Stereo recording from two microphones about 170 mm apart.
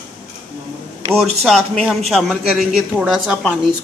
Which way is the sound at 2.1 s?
Centre (ahead or behind).